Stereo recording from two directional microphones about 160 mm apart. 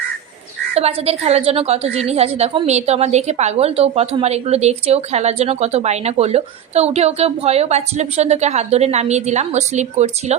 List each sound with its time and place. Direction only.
0.7 s a woman's voice: 40° right (ahead or behind)